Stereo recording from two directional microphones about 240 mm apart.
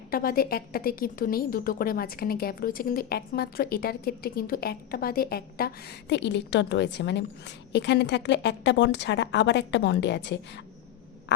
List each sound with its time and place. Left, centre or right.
0.1 s a woman's voice: left